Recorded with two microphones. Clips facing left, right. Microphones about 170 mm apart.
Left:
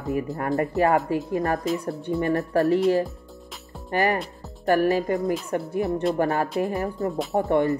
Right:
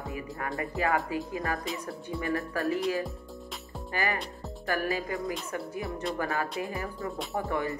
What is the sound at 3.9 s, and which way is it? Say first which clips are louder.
Speech: left 8 dB; 50° left (ahead or behind).